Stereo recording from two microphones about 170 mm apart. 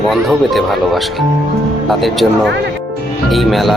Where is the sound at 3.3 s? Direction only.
Centre (ahead or behind).